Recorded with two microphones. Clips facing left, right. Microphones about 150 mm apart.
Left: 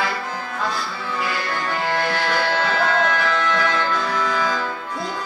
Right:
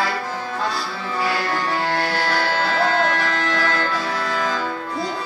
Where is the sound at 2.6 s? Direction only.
35° right (ahead or behind).